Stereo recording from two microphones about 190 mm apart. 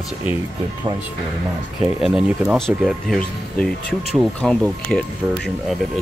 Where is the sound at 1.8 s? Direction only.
5° right (ahead or behind).